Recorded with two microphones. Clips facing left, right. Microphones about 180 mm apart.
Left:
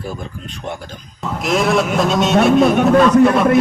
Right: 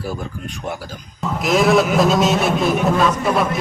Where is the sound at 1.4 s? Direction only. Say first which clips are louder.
Right 1 dB; centre (ahead or behind).